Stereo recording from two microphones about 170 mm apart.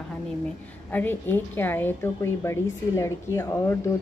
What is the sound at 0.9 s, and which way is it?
Speech, 10° left (ahead or behind).